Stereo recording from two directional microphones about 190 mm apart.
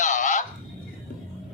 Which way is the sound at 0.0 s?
40° left (ahead or behind).